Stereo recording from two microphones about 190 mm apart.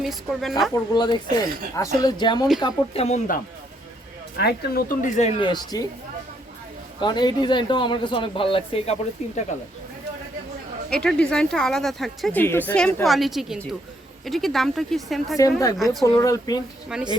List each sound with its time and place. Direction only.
0.0 s speech: centre (ahead or behind)
0.7 s speech: 25° left (ahead or behind)
4.4 s speech: 55° left (ahead or behind); by 5.3 s 40° left (ahead or behind)
5.4 s speech: 20° left (ahead or behind)
7.0 s speech: 25° left (ahead or behind)
10.8 s speech: 5° left (ahead or behind)
16.0 s speech: 20° left (ahead or behind)
16.9 s speech: 5° right (ahead or behind)